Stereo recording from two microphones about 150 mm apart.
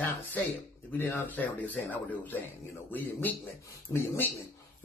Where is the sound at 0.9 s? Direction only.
15° left (ahead or behind).